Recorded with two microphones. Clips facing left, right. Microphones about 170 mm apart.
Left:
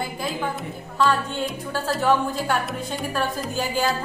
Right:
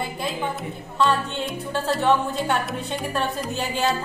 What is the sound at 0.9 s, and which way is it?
Speech, centre (ahead or behind).